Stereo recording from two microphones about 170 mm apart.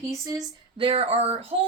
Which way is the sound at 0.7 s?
30° right (ahead or behind).